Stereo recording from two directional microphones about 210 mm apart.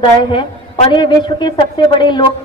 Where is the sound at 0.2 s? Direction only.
25° left (ahead or behind).